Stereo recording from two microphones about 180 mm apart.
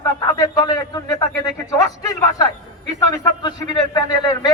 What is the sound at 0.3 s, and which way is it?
A man's voice, 20° left (ahead or behind).